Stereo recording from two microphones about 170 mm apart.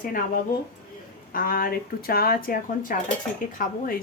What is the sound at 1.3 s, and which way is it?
A woman's voice, 60° left (ahead or behind).